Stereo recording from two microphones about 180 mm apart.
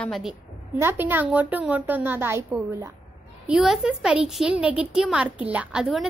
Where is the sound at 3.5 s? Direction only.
5° right (ahead or behind).